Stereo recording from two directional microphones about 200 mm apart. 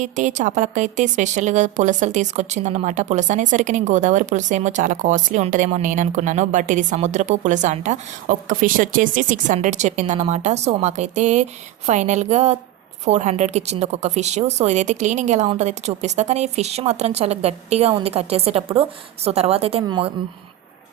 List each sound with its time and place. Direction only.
0.0 s a woman's voice: 35° right (ahead or behind)